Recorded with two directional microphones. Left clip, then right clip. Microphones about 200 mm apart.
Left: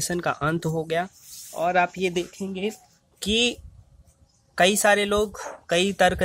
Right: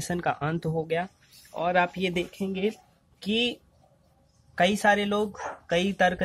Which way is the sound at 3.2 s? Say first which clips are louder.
Left 4 dB; 30° left (ahead or behind).